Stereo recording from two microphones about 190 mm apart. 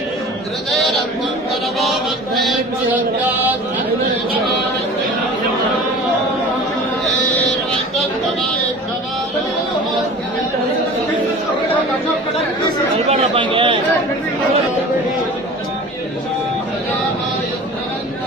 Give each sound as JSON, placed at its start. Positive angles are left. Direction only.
{"t": 1.8, "sound": "mantra", "side_deg": 0}
{"t": 13.1, "sound": "speech", "side_deg": -25}